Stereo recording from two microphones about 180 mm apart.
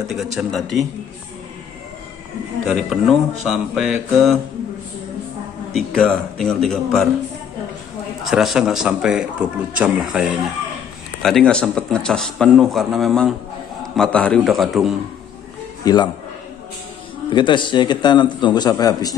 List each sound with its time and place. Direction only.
0.1 s a man's voice: centre (ahead or behind)
2.6 s a man's voice: centre (ahead or behind)
5.7 s a man's voice: 5° left (ahead or behind)
8.2 s a man's voice: centre (ahead or behind)
15.8 s a man's voice: 25° left (ahead or behind)
17.3 s a man's voice: 25° left (ahead or behind)